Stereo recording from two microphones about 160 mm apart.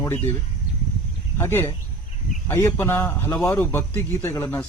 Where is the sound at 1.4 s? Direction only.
15° left (ahead or behind).